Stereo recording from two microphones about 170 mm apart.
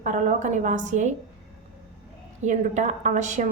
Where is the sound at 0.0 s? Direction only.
45° right (ahead or behind).